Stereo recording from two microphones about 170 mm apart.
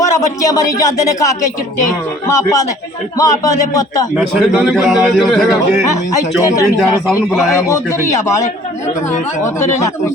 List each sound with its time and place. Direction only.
0.0 s speech: 20° left (ahead or behind)
4.2 s a man's voice: centre (ahead or behind)
7.5 s speech: 15° left (ahead or behind)
9.6 s speech: 15° left (ahead or behind)